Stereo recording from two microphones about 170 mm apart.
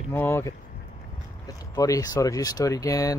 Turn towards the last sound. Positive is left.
turn(degrees=20)  # may be behind; listen again after turning